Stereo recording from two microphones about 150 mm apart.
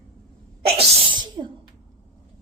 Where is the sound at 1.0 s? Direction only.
30° right (ahead or behind).